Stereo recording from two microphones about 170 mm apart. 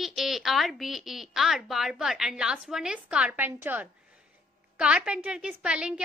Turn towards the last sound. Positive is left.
turn(degrees=-5)  # may be behind; listen again after turning